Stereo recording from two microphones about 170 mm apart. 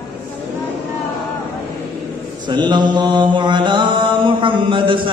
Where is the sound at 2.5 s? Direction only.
25° right (ahead or behind).